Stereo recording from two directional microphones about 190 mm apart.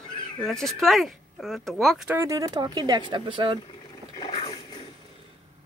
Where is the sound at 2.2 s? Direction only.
20° right (ahead or behind).